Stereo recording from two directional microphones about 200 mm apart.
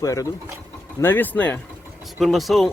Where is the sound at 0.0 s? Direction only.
15° left (ahead or behind).